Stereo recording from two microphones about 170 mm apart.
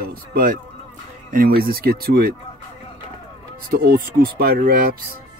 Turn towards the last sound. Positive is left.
turn(degrees=-60)  # may be behind; listen again after turning